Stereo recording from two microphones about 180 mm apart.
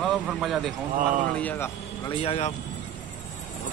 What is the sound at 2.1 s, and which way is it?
Speech, 30° left (ahead or behind).